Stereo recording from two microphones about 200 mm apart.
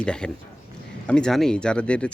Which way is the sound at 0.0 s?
5° left (ahead or behind).